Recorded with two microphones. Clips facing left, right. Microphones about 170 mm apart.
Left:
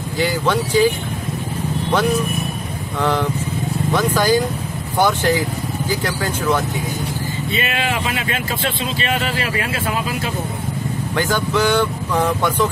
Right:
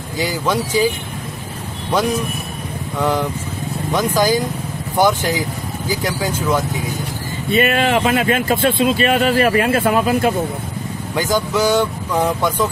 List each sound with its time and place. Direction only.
0.2 s speech: 10° right (ahead or behind)
3.0 s speech: 10° right (ahead or behind)
7.5 s speech: 50° right (ahead or behind)
11.1 s speech: 10° right (ahead or behind)